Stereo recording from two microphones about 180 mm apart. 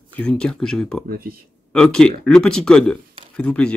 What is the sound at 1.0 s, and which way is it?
Speech, 55° right (ahead or behind).